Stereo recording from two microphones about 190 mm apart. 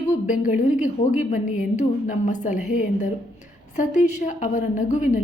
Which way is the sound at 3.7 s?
40° left (ahead or behind).